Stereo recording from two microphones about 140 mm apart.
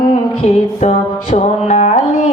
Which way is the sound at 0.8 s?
55° left (ahead or behind).